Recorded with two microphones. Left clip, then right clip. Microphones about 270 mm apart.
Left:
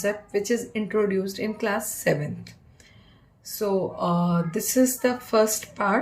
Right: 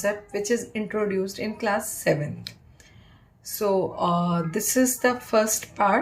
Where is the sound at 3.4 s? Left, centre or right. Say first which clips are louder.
Right 2 dB; centre.